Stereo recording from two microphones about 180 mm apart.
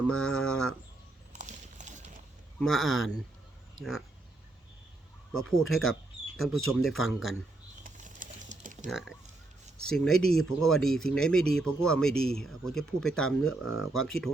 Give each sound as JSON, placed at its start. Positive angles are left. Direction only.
{"t": 0.1, "sound": "speech", "side_deg": 5}
{"t": 1.3, "sound": "clip-clop", "side_deg": -40}
{"t": 2.6, "sound": "speech", "side_deg": 0}
{"t": 5.6, "sound": "speech", "side_deg": 0}
{"t": 7.9, "sound": "typing", "side_deg": -45}
{"t": 8.9, "sound": "speech", "side_deg": 0}